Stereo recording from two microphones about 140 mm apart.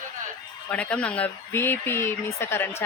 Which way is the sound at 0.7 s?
10° left (ahead or behind).